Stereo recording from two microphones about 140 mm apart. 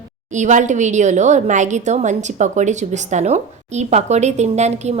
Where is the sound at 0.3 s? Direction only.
60° right (ahead or behind).